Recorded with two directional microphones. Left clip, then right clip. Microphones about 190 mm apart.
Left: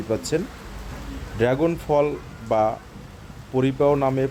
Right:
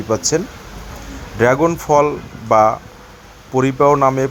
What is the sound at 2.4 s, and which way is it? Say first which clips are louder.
Speech: right 9 dB; 15° right (ahead or behind).